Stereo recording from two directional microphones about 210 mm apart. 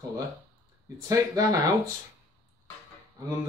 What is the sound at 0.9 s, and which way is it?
Speech, 15° right (ahead or behind).